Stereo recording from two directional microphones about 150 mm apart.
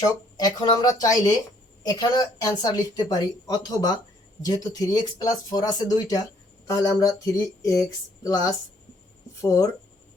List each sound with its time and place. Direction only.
0.0 s speech: 25° left (ahead or behind)